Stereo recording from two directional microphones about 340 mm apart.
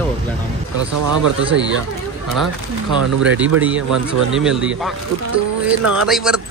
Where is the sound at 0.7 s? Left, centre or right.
Right.